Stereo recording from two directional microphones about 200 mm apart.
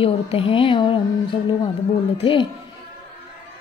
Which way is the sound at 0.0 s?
30° left (ahead or behind).